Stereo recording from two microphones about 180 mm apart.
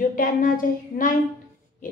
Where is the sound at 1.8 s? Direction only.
45° left (ahead or behind).